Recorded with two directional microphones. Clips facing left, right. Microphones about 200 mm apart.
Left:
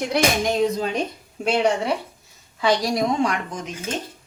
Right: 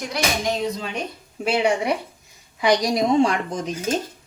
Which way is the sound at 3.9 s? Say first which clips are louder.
Right 5 dB; 40° right (ahead or behind).